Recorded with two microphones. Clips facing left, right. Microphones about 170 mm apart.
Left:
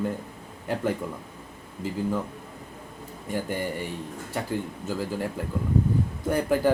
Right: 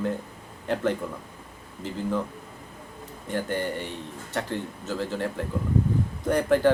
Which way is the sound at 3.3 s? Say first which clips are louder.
Right 1 dB; 10° left (ahead or behind).